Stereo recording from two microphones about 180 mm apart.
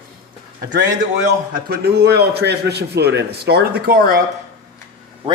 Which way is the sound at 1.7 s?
65° right (ahead or behind).